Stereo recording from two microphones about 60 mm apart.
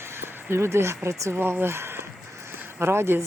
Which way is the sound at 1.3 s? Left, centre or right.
Right.